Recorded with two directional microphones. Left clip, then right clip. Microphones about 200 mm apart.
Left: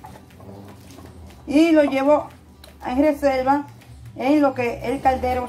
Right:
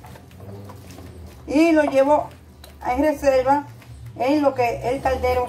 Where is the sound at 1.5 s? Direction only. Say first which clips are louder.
Even; 30° left (ahead or behind).